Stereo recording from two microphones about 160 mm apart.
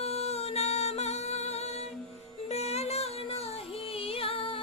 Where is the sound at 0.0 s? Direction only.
40° left (ahead or behind).